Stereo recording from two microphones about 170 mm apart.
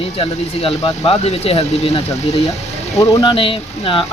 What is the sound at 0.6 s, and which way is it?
Speech, 30° left (ahead or behind).